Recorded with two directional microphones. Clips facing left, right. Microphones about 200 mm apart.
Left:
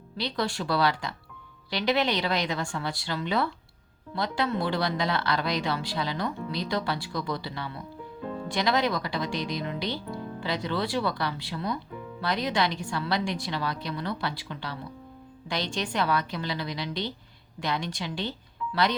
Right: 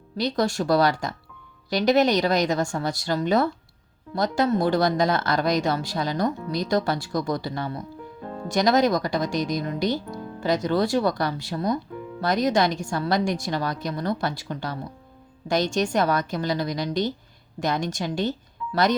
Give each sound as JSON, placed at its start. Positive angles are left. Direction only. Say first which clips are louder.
{"t": 0.2, "sound": "speech", "louder": "right 6 dB", "side_deg": -45}